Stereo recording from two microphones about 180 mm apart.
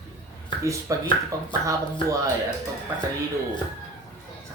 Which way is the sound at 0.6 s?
15° right (ahead or behind).